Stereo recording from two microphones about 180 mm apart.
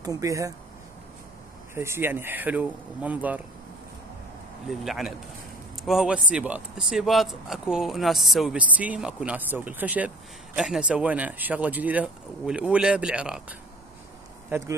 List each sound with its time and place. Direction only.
0.0 s speech: 20° right (ahead or behind)
1.8 s speech: 15° right (ahead or behind)
4.6 s a man's voice: centre (ahead or behind)